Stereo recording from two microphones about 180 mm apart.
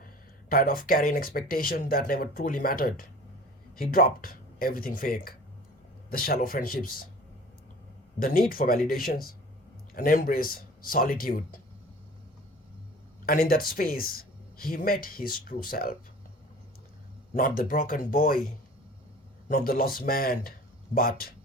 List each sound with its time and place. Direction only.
0.0 s speech: 50° left (ahead or behind)
8.2 s speech: 50° left (ahead or behind)
13.2 s speech: 55° left (ahead or behind)
17.3 s speech: 50° left (ahead or behind)
19.5 s speech: 55° left (ahead or behind)